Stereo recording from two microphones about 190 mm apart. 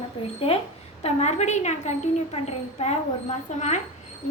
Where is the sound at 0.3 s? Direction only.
30° left (ahead or behind).